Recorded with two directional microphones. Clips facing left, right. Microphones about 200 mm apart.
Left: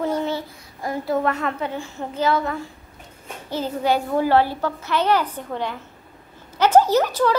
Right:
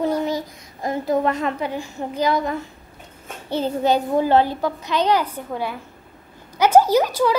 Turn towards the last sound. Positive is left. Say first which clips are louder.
# right 1 dB
turn(degrees=-10)  # may be behind; listen again after turning